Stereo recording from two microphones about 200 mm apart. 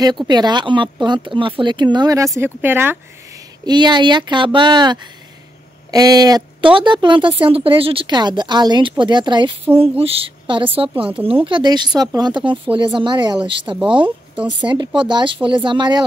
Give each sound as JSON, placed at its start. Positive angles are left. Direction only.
{"t": 0.3, "sound": "a woman's voice", "side_deg": -20}
{"t": 3.6, "sound": "a woman's voice", "side_deg": -20}